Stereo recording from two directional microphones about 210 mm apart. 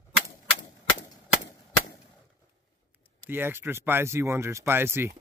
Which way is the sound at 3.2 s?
10° right (ahead or behind).